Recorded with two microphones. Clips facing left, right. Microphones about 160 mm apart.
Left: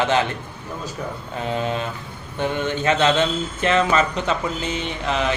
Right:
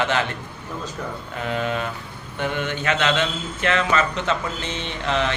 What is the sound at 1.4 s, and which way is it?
Speech, 25° left (ahead or behind).